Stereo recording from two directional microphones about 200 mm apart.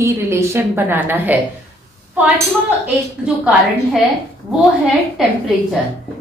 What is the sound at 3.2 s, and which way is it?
Speech, 5° right (ahead or behind).